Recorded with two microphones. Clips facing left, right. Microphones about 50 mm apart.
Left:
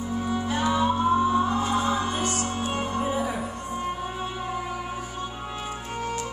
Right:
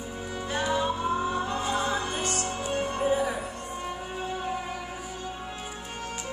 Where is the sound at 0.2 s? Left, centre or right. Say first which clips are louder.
Left 4 dB; left.